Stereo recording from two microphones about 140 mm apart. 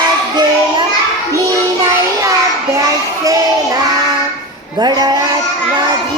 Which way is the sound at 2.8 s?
25° right (ahead or behind).